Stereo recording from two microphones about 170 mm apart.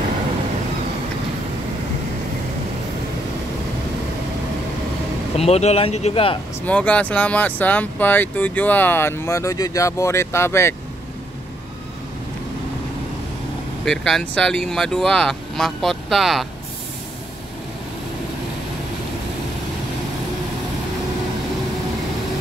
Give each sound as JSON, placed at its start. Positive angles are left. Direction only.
{"t": 5.4, "sound": "speech", "side_deg": 40}
{"t": 6.6, "sound": "speech", "side_deg": 10}
{"t": 13.8, "sound": "speech", "side_deg": 5}